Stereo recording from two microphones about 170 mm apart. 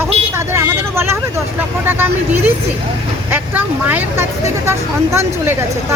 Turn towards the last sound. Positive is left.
turn(degrees=-15)  # may be behind; listen again after turning